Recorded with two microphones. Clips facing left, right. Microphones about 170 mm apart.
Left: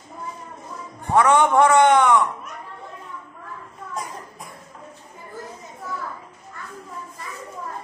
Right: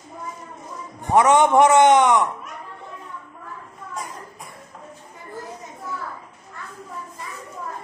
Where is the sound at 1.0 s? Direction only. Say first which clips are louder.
Right 1 dB; 15° right (ahead or behind).